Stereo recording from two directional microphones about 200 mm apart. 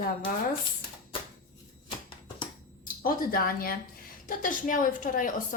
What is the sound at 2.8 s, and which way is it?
A woman's voice, 45° left (ahead or behind).